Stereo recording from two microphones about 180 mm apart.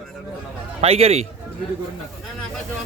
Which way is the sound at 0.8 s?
35° right (ahead or behind).